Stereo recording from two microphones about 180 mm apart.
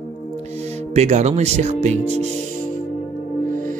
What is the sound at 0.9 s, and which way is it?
Speech, 40° right (ahead or behind).